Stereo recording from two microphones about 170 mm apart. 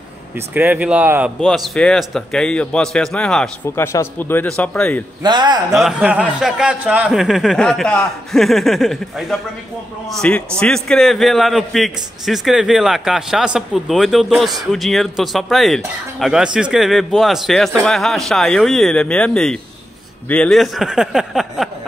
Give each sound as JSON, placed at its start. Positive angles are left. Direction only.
{"t": 0.6, "sound": "speech", "side_deg": -10}
{"t": 1.4, "sound": "a man's voice", "side_deg": 5}
{"t": 3.6, "sound": "speech", "side_deg": 15}
{"t": 5.2, "sound": "a man's voice", "side_deg": -25}
{"t": 5.7, "sound": "a man's voice", "side_deg": 0}